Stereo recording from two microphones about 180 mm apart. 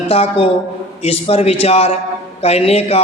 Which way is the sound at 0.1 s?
35° left (ahead or behind).